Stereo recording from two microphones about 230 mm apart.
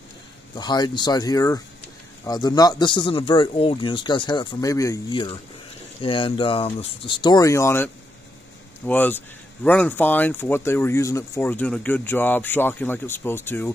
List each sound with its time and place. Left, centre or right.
0.6 s speech: centre